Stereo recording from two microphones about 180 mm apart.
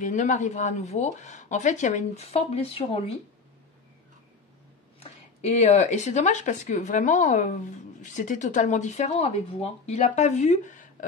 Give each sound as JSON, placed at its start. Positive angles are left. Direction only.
{"t": 0.0, "sound": "speech", "side_deg": 45}
{"t": 5.0, "sound": "speech", "side_deg": 35}